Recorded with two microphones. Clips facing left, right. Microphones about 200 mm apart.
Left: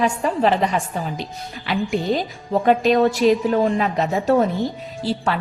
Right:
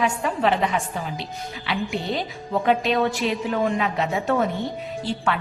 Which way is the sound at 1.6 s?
40° left (ahead or behind).